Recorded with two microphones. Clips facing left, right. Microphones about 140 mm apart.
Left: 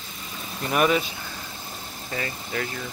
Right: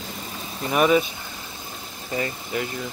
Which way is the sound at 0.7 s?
10° right (ahead or behind).